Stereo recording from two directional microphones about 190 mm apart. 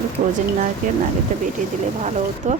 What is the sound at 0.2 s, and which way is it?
Speech, 45° right (ahead or behind).